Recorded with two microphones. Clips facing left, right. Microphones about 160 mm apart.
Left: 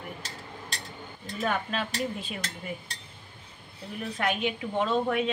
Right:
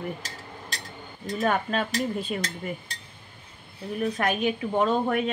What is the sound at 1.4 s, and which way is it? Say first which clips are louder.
Speech: right 4 dB; 45° right (ahead or behind).